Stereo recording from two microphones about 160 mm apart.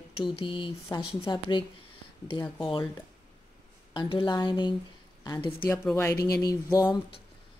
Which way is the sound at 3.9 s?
30° left (ahead or behind).